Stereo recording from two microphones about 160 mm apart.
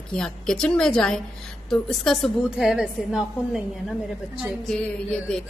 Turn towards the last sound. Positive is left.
turn(degrees=5)  # may be behind; listen again after turning